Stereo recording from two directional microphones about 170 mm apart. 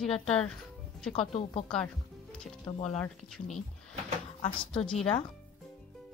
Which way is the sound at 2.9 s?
5° left (ahead or behind).